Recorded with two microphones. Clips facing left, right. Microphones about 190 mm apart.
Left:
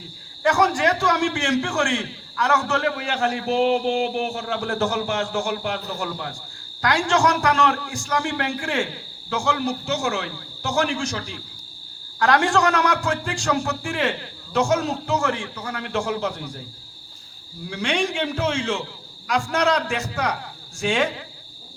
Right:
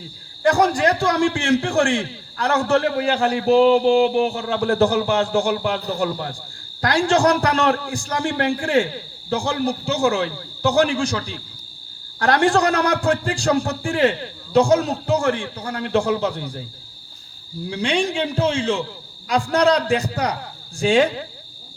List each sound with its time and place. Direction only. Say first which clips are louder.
0.4 s a man's voice: right 3 dB; 35° right (ahead or behind)
17.7 s a man's voice: right 3 dB; 35° right (ahead or behind)